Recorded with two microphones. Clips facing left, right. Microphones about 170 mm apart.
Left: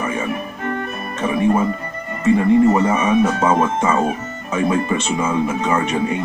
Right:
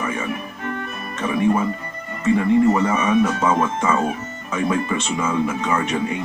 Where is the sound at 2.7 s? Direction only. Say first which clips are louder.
Left 2 dB; 25° left (ahead or behind).